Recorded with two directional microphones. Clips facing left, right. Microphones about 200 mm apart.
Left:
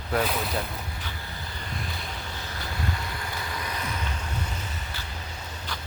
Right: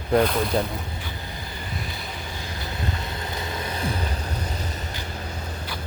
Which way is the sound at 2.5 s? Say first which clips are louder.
Right 1 dB; 25° right (ahead or behind).